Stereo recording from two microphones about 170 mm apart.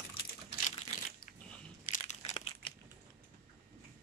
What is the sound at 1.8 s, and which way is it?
Crushing, 45° left (ahead or behind).